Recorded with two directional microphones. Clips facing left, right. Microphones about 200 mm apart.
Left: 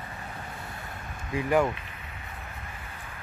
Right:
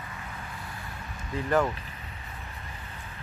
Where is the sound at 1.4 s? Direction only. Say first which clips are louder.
Left 1 dB; 10° left (ahead or behind).